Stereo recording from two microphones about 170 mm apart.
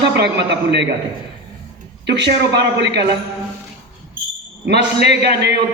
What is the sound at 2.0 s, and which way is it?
Speech, 90° right.